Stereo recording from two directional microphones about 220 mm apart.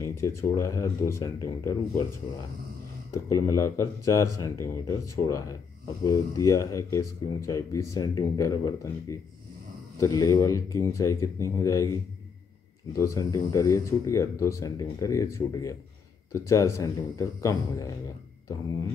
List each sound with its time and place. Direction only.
0.0 s speech: 15° left (ahead or behind)
3.3 s speech: 15° left (ahead or behind)
12.9 s speech: 15° left (ahead or behind)